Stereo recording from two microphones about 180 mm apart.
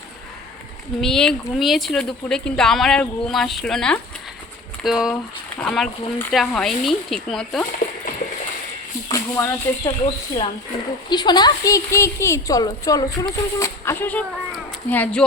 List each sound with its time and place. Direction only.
1.0 s speech: 5° left (ahead or behind)
9.1 s a woman's voice: 15° left (ahead or behind)